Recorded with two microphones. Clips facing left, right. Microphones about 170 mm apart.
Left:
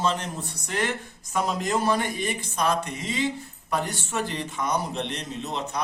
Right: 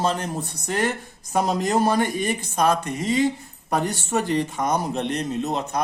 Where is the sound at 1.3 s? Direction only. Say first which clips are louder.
Right 4 dB; 40° right (ahead or behind).